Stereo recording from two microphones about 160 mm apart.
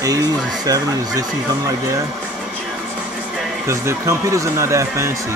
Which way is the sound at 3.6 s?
15° right (ahead or behind).